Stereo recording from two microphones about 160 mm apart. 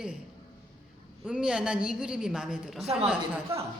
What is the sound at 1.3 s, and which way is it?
A woman's voice, 5° right (ahead or behind).